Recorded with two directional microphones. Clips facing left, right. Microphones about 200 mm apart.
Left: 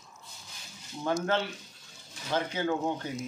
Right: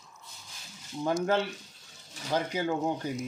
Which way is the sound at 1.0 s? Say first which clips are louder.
Right 2 dB; 10° right (ahead or behind).